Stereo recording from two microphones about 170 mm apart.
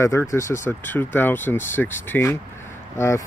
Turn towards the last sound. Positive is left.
turn(degrees=15)  # may be behind; listen again after turning